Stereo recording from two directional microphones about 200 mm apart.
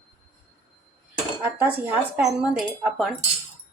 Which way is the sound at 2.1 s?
5° right (ahead or behind).